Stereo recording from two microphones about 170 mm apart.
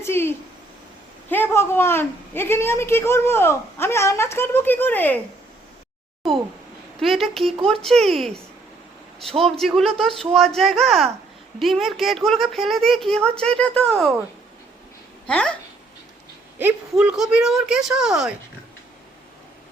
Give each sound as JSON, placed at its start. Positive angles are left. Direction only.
{"t": 0.0, "sound": "a sound", "side_deg": 15}
{"t": 1.3, "sound": "a woman's voice", "side_deg": 10}
{"t": 6.2, "sound": "speech", "side_deg": 0}
{"t": 9.4, "sound": "speech", "side_deg": 0}
{"t": 15.3, "sound": "speech", "side_deg": 5}
{"t": 16.6, "sound": "speech", "side_deg": -10}